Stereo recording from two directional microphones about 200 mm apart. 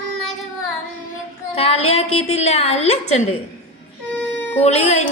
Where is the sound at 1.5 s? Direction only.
30° left (ahead or behind).